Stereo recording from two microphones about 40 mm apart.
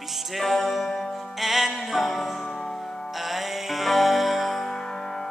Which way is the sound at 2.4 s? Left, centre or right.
Centre.